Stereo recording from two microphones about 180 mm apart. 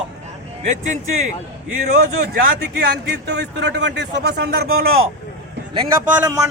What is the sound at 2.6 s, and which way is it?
Speech, 65° right (ahead or behind).